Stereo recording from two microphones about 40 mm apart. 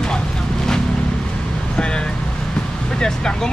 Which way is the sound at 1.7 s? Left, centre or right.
Left.